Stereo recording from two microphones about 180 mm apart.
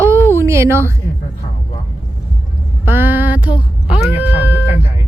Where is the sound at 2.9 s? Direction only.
10° right (ahead or behind).